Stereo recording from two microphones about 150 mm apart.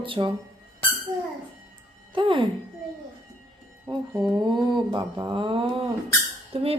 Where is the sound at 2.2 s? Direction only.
30° right (ahead or behind).